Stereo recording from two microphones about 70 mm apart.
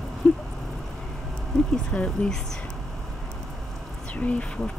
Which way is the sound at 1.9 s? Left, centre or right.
Centre.